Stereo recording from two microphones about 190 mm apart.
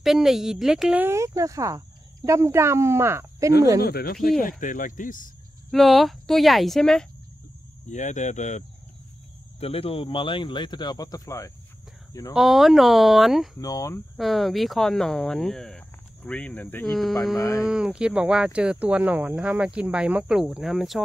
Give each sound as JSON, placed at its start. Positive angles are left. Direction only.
{"t": 0.0, "sound": "speech", "side_deg": 0}
{"t": 3.8, "sound": "speech", "side_deg": 55}
{"t": 5.7, "sound": "speech", "side_deg": 0}
{"t": 7.9, "sound": "speech", "side_deg": 40}
{"t": 12.4, "sound": "speech", "side_deg": 0}
{"t": 13.6, "sound": "speech", "side_deg": 20}
{"t": 14.1, "sound": "speech", "side_deg": 0}
{"t": 17.4, "sound": "speech", "side_deg": 15}
{"t": 17.6, "sound": "speech", "side_deg": -5}